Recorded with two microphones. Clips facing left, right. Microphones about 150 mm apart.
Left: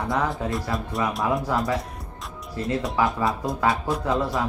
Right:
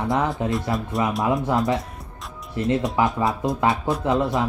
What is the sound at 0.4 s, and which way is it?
Speech, 20° right (ahead or behind).